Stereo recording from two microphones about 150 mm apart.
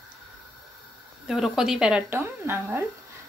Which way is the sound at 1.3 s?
5° right (ahead or behind).